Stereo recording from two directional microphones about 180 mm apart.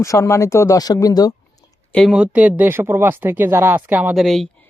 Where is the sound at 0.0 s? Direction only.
15° left (ahead or behind).